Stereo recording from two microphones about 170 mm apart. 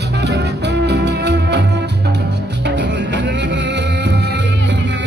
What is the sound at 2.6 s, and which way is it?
Music, 90° right.